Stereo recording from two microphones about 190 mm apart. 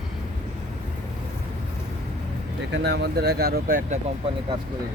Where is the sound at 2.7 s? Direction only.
65° right (ahead or behind); by 4.0 s 45° right (ahead or behind).